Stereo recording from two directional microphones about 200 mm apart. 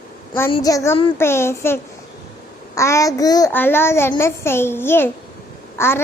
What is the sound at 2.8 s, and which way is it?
A child's voice, 15° left (ahead or behind).